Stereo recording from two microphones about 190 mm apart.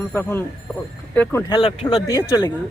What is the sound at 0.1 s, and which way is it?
Speech, 10° left (ahead or behind).